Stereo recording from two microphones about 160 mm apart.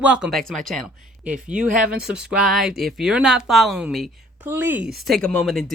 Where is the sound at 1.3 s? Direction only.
55° right (ahead or behind).